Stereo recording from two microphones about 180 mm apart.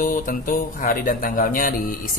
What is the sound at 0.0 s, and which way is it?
Speech, 50° left (ahead or behind).